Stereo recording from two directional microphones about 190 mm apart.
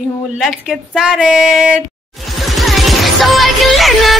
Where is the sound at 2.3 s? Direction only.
Centre (ahead or behind).